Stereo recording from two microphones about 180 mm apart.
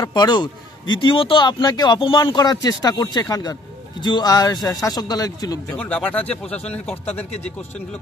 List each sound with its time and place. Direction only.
0.0 s a man's voice: 25° left (ahead or behind)
5.7 s speech: 10° left (ahead or behind)
6.4 s speech: 35° left (ahead or behind)